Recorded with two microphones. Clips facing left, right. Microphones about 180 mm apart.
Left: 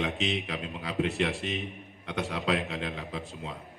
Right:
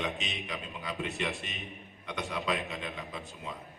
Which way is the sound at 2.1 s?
65° left (ahead or behind).